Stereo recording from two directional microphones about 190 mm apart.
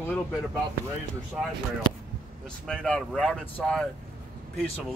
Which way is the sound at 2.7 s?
5° left (ahead or behind).